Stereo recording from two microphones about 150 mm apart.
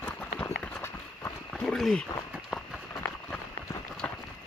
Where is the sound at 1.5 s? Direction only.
Centre (ahead or behind).